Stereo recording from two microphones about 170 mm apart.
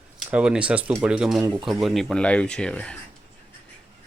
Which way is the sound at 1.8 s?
Centre (ahead or behind).